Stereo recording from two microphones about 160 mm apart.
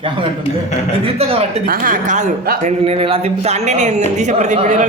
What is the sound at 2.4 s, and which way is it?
Speech, 65° right (ahead or behind).